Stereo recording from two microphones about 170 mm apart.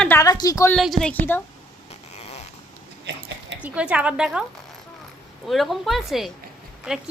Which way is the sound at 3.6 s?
5° right (ahead or behind).